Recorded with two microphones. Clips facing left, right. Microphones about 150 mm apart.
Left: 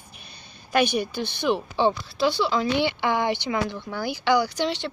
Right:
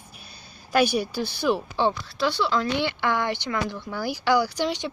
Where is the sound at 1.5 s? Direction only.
10° left (ahead or behind).